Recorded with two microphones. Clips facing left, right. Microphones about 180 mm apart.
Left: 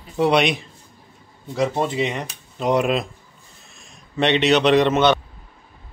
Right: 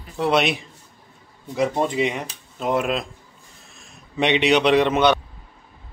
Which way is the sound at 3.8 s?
5° right (ahead or behind).